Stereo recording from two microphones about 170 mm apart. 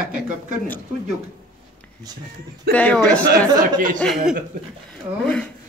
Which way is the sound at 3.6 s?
50° right (ahead or behind).